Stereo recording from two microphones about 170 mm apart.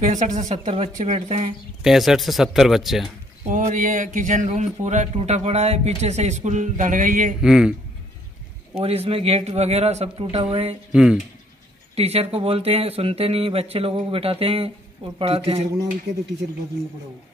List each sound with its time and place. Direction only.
0.0 s speech: 45° right (ahead or behind)
1.8 s speech: centre (ahead or behind)
3.4 s speech: 45° right (ahead or behind)
7.4 s speech: 5° right (ahead or behind)
8.7 s speech: 35° right (ahead or behind)
10.9 s speech: 5° right (ahead or behind)
11.9 s speech: 35° right (ahead or behind)